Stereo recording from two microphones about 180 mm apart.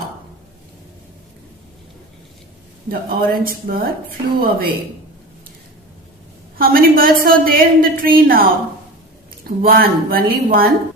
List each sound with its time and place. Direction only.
2.9 s a woman's voice: 55° right (ahead or behind)
6.6 s a woman's voice: 55° right (ahead or behind)
9.6 s a woman's voice: 55° right (ahead or behind)